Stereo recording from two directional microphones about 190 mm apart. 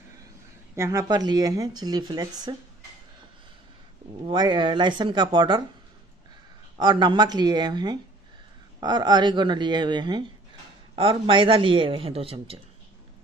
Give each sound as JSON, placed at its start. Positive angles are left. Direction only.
{"t": 0.7, "sound": "speech", "side_deg": -15}
{"t": 4.2, "sound": "speech", "side_deg": -25}
{"t": 6.8, "sound": "speech", "side_deg": -25}